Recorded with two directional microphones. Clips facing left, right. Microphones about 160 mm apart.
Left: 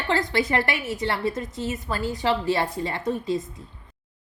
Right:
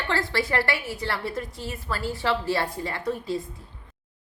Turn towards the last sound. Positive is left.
turn(degrees=20)  # may be behind; listen again after turning